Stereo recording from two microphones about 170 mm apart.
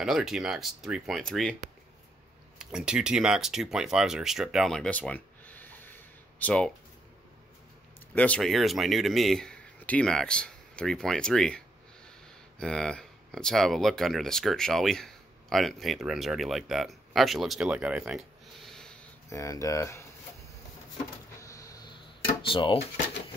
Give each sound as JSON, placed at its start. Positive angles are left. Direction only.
{"t": 0.0, "sound": "speech", "side_deg": 0}
{"t": 2.6, "sound": "speech", "side_deg": -5}
{"t": 8.1, "sound": "speech", "side_deg": 10}
{"t": 19.2, "sound": "speech", "side_deg": 20}
{"t": 21.4, "sound": "a sound", "side_deg": 20}